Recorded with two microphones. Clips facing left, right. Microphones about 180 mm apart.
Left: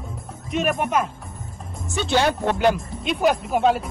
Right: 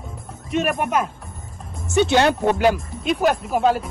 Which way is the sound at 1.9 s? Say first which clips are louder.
Right 6 dB; 15° right (ahead or behind).